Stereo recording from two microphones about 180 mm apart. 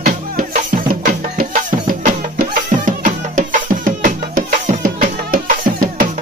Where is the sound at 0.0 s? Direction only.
50° right (ahead or behind).